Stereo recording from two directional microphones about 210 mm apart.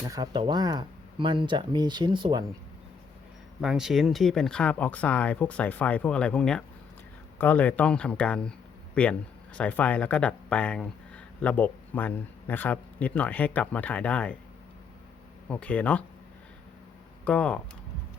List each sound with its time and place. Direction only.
0.0 s speech: 20° right (ahead or behind)
3.6 s speech: centre (ahead or behind)
15.4 s speech: 5° left (ahead or behind)
17.2 s speech: 5° left (ahead or behind)